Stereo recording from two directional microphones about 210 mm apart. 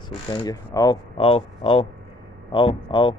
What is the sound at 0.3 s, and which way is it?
Speech, 20° left (ahead or behind).